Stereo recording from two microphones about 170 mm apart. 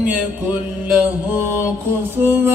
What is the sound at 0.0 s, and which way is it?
Mantra, 10° right (ahead or behind).